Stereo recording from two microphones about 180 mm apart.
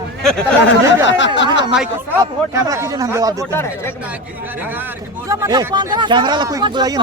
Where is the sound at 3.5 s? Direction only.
10° left (ahead or behind).